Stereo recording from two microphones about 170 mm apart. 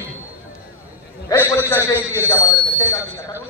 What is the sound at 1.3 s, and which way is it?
A man's voice, 20° left (ahead or behind).